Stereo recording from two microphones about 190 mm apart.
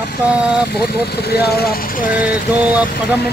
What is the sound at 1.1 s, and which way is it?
Speech, 55° left (ahead or behind).